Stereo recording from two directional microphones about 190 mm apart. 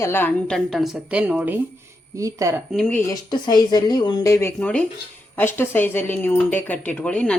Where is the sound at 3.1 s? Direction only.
20° left (ahead or behind); by 7.3 s 5° left (ahead or behind).